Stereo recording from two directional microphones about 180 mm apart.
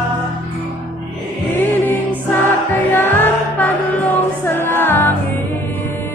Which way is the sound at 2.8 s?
10° left (ahead or behind).